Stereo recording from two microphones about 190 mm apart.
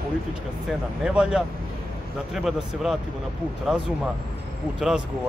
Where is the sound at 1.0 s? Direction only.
5° right (ahead or behind).